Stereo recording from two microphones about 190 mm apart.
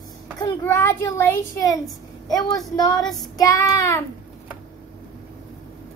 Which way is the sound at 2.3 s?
20° left (ahead or behind).